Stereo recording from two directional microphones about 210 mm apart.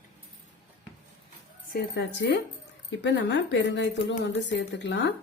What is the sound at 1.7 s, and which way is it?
A woman's voice, 50° left (ahead or behind).